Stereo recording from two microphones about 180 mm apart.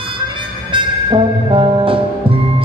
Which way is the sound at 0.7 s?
30° right (ahead or behind).